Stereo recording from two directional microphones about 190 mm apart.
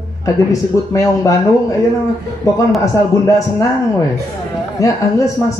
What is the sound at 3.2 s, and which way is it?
Speech, 15° left (ahead or behind).